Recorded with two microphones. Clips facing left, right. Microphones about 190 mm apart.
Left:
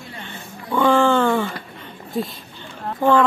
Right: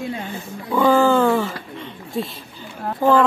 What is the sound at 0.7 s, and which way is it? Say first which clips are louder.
Speech: right 1 dB; 5° right (ahead or behind).